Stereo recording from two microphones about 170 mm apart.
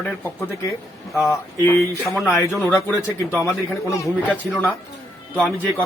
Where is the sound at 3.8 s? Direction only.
15° left (ahead or behind).